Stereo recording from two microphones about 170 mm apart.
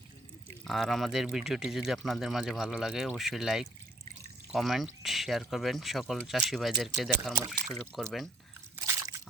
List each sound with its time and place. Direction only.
0.6 s speech: centre (ahead or behind)
8.7 s slosh: 20° right (ahead or behind)